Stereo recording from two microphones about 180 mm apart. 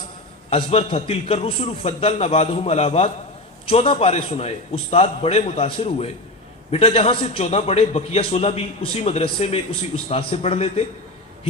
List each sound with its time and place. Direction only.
0.5 s a man's voice: 35° left (ahead or behind)